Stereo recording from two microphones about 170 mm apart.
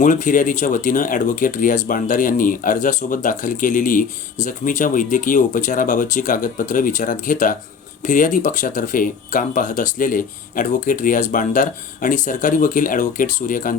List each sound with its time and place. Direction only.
0.0 s speech: 50° left (ahead or behind)